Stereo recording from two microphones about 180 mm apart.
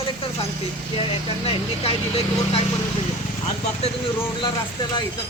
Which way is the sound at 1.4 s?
30° left (ahead or behind).